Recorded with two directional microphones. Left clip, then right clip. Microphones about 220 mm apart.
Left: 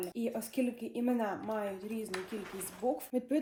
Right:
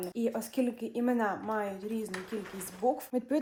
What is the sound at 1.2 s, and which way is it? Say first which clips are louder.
Speech: right 4 dB; centre (ahead or behind).